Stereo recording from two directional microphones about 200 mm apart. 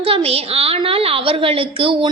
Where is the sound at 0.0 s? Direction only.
30° right (ahead or behind).